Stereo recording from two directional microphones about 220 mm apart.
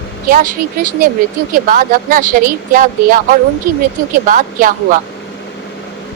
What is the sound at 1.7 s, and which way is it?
A woman's voice, 40° right (ahead or behind).